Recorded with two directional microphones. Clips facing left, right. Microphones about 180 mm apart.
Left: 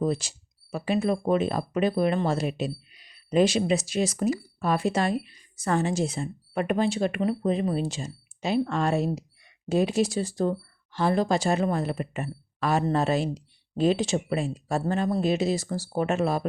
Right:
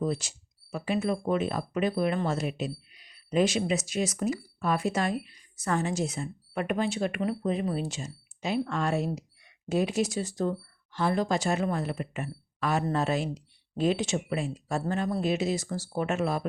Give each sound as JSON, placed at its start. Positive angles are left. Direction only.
{"t": 0.0, "sound": "speech", "side_deg": 30}